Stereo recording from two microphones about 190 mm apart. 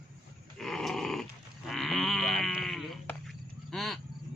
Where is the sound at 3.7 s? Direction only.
Centre (ahead or behind).